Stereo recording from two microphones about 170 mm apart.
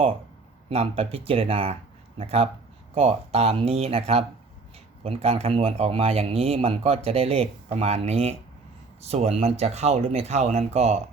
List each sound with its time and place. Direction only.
0.7 s speech: 35° right (ahead or behind)